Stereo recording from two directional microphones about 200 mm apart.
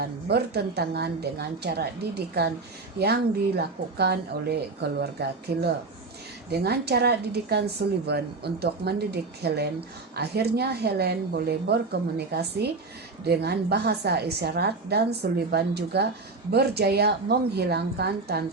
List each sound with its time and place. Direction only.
0.0 s a woman's voice: 55° right (ahead or behind)